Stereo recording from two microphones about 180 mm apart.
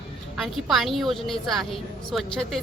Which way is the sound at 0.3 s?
Centre (ahead or behind).